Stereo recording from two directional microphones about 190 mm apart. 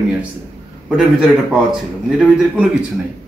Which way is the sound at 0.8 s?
Centre (ahead or behind).